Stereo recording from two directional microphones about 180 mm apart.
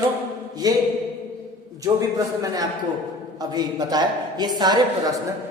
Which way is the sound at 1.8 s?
20° right (ahead or behind).